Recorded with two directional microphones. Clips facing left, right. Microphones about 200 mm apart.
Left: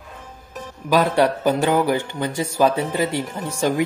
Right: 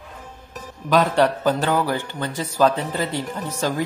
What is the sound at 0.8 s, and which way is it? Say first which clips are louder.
A man's voice: left 1 dB; 10° left (ahead or behind).